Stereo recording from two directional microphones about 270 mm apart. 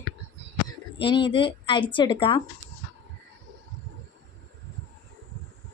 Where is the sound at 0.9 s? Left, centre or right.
Centre.